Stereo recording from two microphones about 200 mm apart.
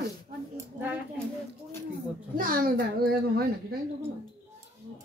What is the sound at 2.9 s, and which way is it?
Speech, 50° right (ahead or behind).